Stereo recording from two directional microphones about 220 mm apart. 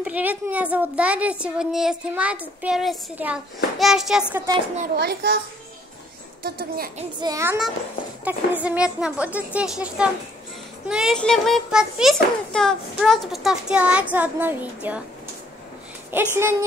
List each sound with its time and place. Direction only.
0.0 s a woman's voice: 5° right (ahead or behind)
4.8 s a child's voice: 45° right (ahead or behind)
6.4 s a child's voice: 45° right (ahead or behind)
7.0 s a child's voice: 20° right (ahead or behind)
16.1 s a child's voice: 10° right (ahead or behind)